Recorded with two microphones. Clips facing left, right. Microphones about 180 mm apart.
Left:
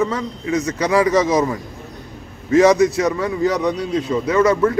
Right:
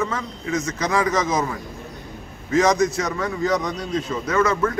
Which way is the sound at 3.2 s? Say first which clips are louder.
Left 4 dB; 10° left (ahead or behind).